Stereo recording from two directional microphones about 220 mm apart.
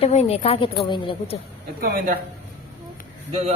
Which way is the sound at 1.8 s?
40° right (ahead or behind).